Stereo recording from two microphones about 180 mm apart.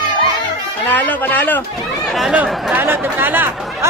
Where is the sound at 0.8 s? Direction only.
10° left (ahead or behind).